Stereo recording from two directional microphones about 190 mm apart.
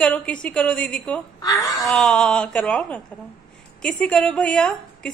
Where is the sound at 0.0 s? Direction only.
5° left (ahead or behind).